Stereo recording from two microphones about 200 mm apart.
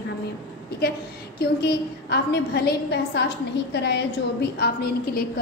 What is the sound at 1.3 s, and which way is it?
A woman's voice, 55° left (ahead or behind).